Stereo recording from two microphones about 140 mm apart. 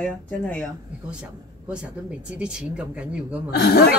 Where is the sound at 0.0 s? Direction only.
10° left (ahead or behind).